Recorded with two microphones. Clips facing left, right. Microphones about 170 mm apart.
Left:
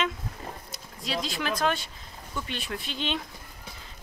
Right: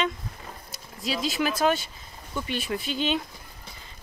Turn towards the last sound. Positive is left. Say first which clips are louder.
# right 5 dB
turn(degrees=-5)  # may be behind; listen again after turning